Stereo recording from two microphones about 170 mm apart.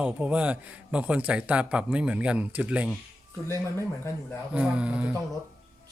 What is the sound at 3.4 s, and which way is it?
Speech, 15° left (ahead or behind).